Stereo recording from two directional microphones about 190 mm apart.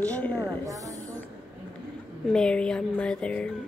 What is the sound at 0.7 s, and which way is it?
Speech, 15° right (ahead or behind).